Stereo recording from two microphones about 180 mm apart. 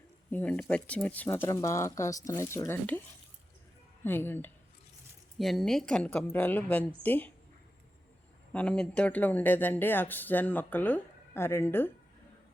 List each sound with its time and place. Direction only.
0.3 s speech: 10° left (ahead or behind)
1.4 s speech: 20° left (ahead or behind)
4.0 s speech: 10° left (ahead or behind)
5.4 s speech: centre (ahead or behind)
8.5 s speech: 5° left (ahead or behind)